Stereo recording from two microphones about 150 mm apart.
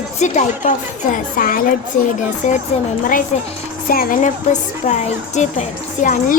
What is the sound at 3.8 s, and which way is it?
Speech, 65° left (ahead or behind).